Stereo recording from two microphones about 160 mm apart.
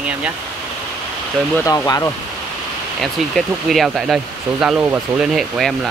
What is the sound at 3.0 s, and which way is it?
Speech, centre (ahead or behind).